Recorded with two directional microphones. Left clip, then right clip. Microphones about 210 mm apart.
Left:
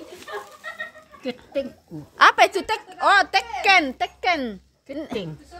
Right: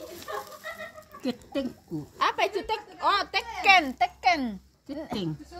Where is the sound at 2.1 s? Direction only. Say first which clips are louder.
Left 11 dB; 50° left (ahead or behind).